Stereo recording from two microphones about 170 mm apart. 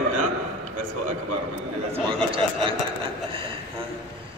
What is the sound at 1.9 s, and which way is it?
Speech, 30° right (ahead or behind).